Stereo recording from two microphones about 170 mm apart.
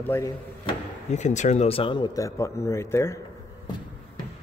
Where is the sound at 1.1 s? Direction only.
45° left (ahead or behind); by 3.2 s 15° left (ahead or behind).